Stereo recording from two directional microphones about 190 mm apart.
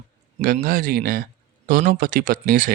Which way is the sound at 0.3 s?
45° right (ahead or behind).